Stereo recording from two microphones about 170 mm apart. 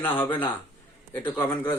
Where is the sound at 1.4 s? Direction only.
25° left (ahead or behind).